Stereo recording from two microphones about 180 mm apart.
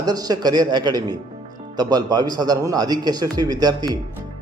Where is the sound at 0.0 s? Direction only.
20° right (ahead or behind).